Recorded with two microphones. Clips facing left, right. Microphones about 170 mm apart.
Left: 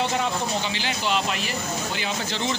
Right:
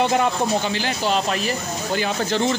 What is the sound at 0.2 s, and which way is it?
Speech, 45° right (ahead or behind).